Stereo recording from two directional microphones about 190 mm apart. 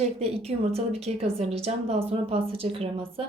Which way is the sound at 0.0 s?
30° right (ahead or behind).